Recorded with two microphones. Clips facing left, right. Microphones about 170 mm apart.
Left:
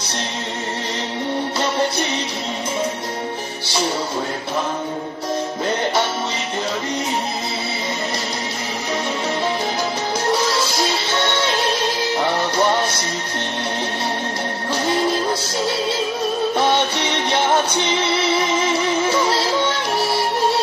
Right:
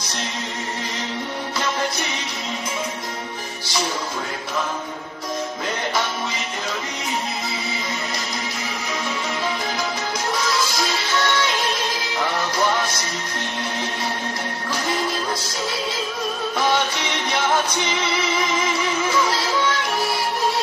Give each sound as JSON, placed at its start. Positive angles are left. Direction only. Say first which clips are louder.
{"t": 10.3, "sound": "music", "louder": "left 2 dB", "side_deg": 30}
{"t": 16.5, "sound": "music", "louder": "even", "side_deg": 30}